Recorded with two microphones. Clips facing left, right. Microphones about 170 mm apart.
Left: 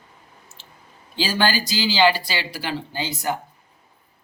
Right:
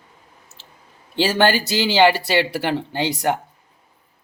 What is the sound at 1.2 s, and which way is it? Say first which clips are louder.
Speech: right 5 dB; 65° right (ahead or behind).